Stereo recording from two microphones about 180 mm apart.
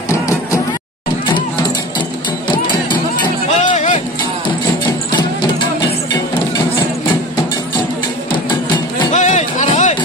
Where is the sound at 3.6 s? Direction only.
45° left (ahead or behind).